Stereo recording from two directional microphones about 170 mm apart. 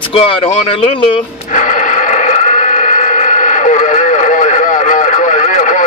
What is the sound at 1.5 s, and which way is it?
Radio, 45° left (ahead or behind).